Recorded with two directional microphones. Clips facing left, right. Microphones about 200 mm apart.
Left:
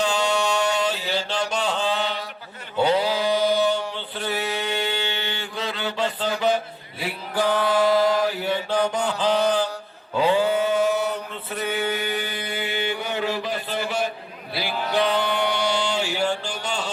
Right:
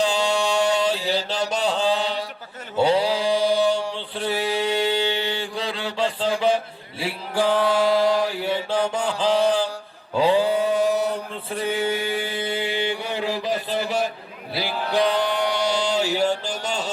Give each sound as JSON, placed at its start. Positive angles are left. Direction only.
{"t": 0.0, "sound": "mantra", "side_deg": -35}
{"t": 10.2, "sound": "chant", "side_deg": -30}
{"t": 14.5, "sound": "mantra", "side_deg": -35}